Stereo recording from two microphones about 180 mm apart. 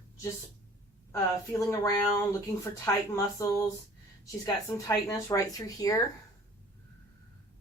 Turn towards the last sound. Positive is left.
turn(degrees=20)  # may be behind; listen again after turning